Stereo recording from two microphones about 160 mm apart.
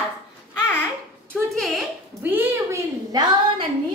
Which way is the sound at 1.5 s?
Centre (ahead or behind).